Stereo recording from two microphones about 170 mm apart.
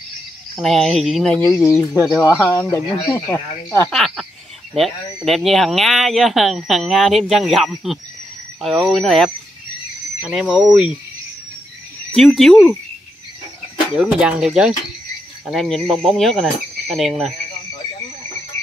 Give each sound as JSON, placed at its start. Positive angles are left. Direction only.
{"t": 0.6, "sound": "speech", "side_deg": 0}
{"t": 1.7, "sound": "speech", "side_deg": 15}
{"t": 3.9, "sound": "speech", "side_deg": 0}
{"t": 10.3, "sound": "speech", "side_deg": -5}
{"t": 12.1, "sound": "speech", "side_deg": 0}
{"t": 13.9, "sound": "speech", "side_deg": -5}